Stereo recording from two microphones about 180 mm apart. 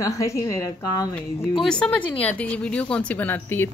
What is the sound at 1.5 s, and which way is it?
A woman's voice, 5° left (ahead or behind).